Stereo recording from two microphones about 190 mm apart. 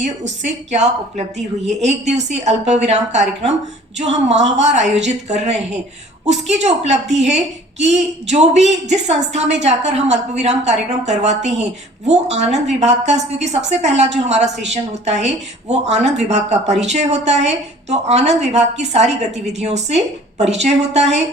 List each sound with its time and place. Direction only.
0.0 s speech: 35° right (ahead or behind)